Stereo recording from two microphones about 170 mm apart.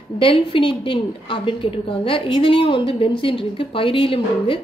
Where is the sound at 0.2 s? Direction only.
30° left (ahead or behind).